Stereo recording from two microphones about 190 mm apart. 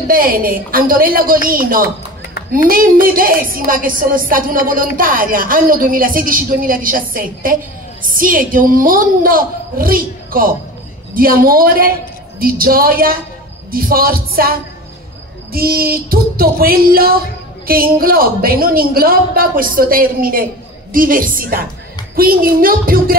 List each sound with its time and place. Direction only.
0.1 s speech: 50° right (ahead or behind)